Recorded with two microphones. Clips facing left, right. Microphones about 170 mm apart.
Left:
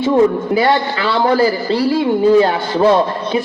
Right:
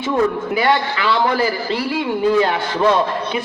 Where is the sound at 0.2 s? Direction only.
35° left (ahead or behind).